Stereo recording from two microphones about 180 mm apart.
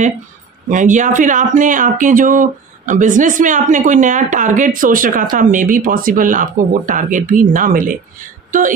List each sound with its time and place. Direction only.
0.7 s speech: 45° right (ahead or behind)